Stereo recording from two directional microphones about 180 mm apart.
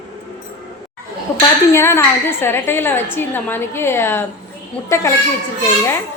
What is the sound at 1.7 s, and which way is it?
A woman's voice, 15° left (ahead or behind).